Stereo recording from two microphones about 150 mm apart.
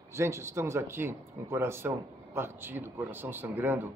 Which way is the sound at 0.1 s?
20° right (ahead or behind).